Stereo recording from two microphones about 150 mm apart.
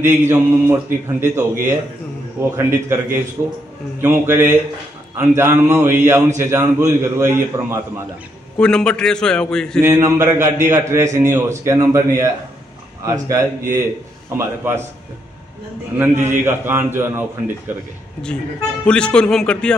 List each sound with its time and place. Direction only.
0.0 s a man's voice: 15° right (ahead or behind)
8.5 s a man's voice: 5° left (ahead or behind)
9.8 s a man's voice: 20° right (ahead or behind)
16.0 s a man's voice: 15° right (ahead or behind)
18.9 s speech: 5° left (ahead or behind)